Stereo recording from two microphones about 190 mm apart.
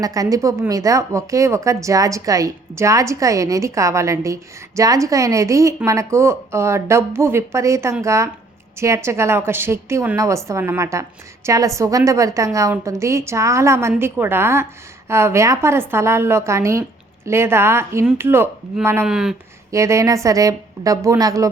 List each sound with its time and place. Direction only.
0.0 s speech: 20° right (ahead or behind); by 19.4 s 5° right (ahead or behind)
19.7 s speech: 15° right (ahead or behind)